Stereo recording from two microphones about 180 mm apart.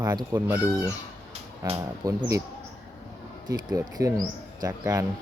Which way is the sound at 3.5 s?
20° right (ahead or behind).